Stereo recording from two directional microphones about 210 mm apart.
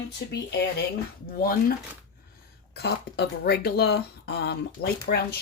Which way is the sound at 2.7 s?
50° left (ahead or behind).